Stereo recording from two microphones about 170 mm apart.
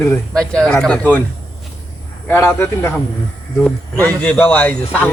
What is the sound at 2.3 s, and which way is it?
Speech, 15° left (ahead or behind).